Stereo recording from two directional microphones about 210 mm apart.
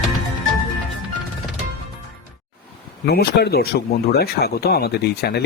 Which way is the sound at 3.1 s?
50° left (ahead or behind).